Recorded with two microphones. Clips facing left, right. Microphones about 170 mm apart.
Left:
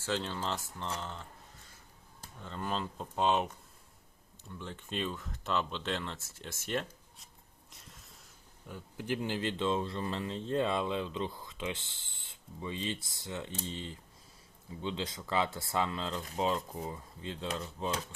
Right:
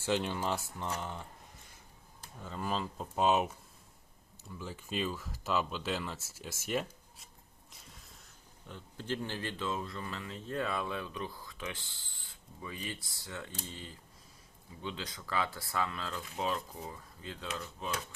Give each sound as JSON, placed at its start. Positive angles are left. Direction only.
{"t": 0.0, "sound": "speech", "side_deg": -15}
{"t": 2.4, "sound": "speech", "side_deg": -5}
{"t": 7.7, "sound": "a sound", "side_deg": 0}
{"t": 8.6, "sound": "speech", "side_deg": 10}